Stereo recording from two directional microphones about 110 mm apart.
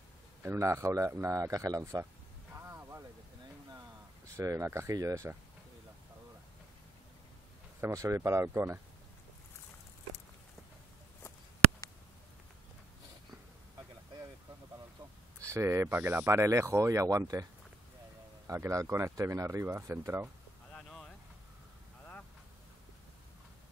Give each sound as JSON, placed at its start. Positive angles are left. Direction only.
{"t": 0.4, "sound": "speech", "side_deg": -25}
{"t": 2.5, "sound": "a sound", "side_deg": -25}
{"t": 4.4, "sound": "speech", "side_deg": -25}
{"t": 7.8, "sound": "speech", "side_deg": -30}
{"t": 15.4, "sound": "speech", "side_deg": -25}
{"t": 18.5, "sound": "speech", "side_deg": -30}
{"t": 20.7, "sound": "a sound", "side_deg": 5}